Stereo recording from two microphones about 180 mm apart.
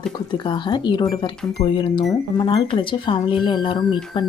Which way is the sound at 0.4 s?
25° left (ahead or behind).